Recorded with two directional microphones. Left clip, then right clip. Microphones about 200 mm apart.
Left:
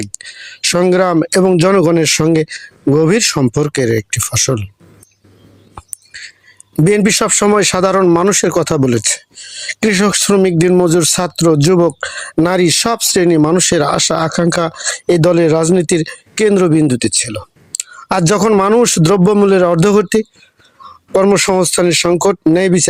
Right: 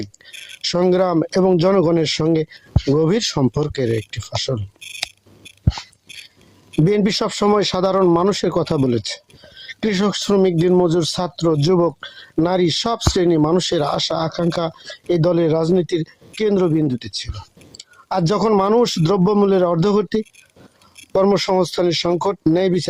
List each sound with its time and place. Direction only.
0.0 s speech: 25° left (ahead or behind)
6.8 s speech: 25° left (ahead or behind)